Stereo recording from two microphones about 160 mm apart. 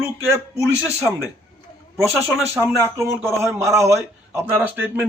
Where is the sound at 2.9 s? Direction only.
15° right (ahead or behind).